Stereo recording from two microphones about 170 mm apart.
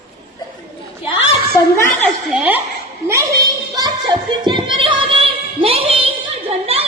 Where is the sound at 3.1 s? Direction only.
20° right (ahead or behind).